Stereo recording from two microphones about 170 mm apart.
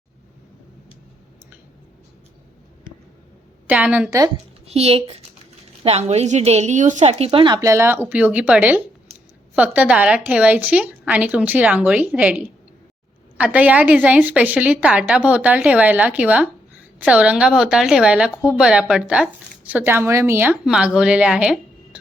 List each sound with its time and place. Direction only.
3.7 s a woman's voice: 10° right (ahead or behind)
4.7 s a woman's voice: 35° right (ahead or behind); by 21.6 s 5° right (ahead or behind)